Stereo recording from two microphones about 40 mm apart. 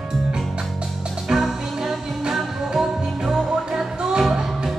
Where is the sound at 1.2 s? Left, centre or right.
Centre.